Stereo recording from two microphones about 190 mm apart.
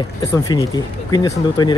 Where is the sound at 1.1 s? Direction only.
20° left (ahead or behind).